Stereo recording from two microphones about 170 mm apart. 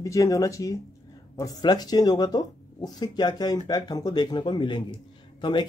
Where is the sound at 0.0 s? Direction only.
20° left (ahead or behind).